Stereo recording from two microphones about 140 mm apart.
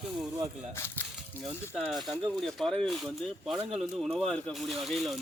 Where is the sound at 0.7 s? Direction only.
20° left (ahead or behind).